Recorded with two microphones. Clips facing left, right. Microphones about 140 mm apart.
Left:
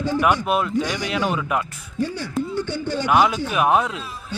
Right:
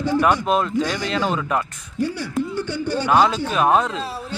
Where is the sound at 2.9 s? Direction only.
15° left (ahead or behind).